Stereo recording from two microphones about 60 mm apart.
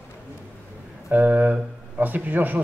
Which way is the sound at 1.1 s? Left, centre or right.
Right.